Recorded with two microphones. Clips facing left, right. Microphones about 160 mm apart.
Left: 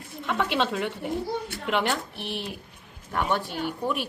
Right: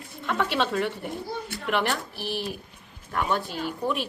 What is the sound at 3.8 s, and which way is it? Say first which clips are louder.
Speech: right 2 dB; centre (ahead or behind).